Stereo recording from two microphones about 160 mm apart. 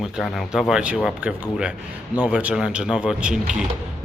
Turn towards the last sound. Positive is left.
turn(degrees=-5)  # may be behind; listen again after turning